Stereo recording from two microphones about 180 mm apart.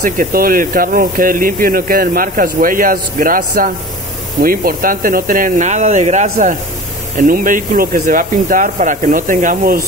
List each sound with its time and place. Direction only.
0.0 s speech: 50° right (ahead or behind)
7.2 s speech: 50° right (ahead or behind)